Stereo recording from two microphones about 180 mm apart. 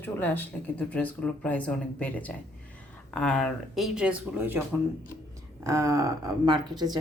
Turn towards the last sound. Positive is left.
turn(degrees=-25)  # may be behind; listen again after turning